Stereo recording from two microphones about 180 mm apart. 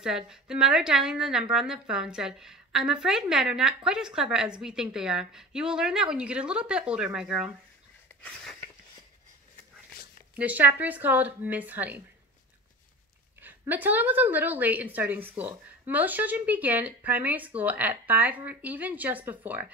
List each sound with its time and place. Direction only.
0.0 s a woman's voice: 5° right (ahead or behind)
8.2 s a sound: 5° left (ahead or behind)
10.3 s a woman's voice: 10° right (ahead or behind)
13.4 s a woman's voice: 10° right (ahead or behind)